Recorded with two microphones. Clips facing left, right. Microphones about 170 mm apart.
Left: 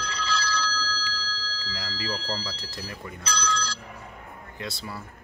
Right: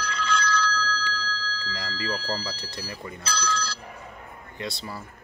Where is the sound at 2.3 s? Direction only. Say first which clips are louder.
Right 2 dB; centre (ahead or behind).